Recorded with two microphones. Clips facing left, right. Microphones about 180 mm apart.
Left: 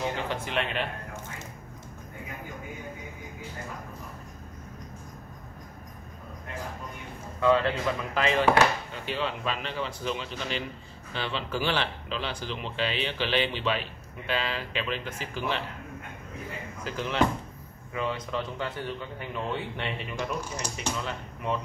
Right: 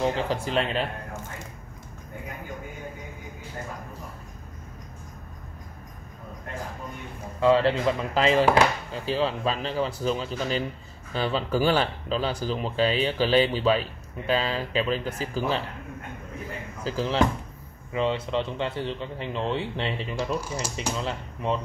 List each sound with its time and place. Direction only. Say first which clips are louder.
0.0 s speech: right 5 dB; 35° right (ahead or behind)
7.3 s speech: right 3 dB; 30° right (ahead or behind)
16.8 s a man's voice: right 3 dB; 35° right (ahead or behind)